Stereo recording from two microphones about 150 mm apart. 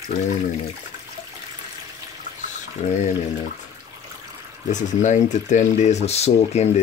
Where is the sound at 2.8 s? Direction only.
50° left (ahead or behind).